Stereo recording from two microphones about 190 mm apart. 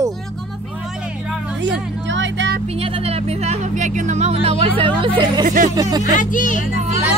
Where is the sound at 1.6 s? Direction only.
75° right (ahead or behind).